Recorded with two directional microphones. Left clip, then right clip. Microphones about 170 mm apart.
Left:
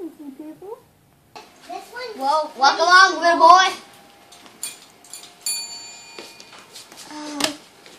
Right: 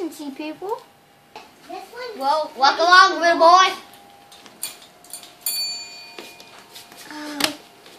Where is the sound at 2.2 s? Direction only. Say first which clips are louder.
Even; centre (ahead or behind).